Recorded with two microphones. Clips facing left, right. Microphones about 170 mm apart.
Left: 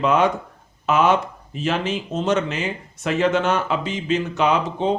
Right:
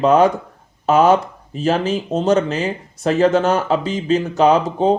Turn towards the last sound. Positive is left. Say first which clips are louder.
# right 6 dB
turn(degrees=-40)  # may be behind; listen again after turning